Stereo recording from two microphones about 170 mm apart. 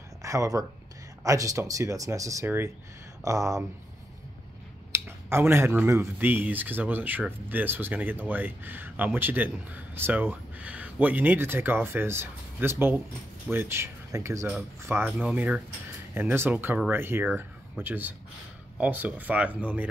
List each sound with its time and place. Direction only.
0.2 s speech: 20° right (ahead or behind)
4.9 s speech: 15° right (ahead or behind)